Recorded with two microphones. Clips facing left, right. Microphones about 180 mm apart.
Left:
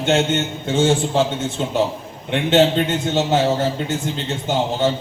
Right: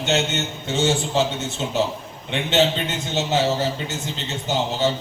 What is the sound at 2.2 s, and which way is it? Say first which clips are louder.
A man's voice: left 5 dB; 50° left (ahead or behind).